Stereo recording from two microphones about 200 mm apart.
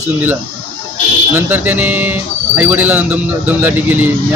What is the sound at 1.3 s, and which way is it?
Speech, 10° right (ahead or behind).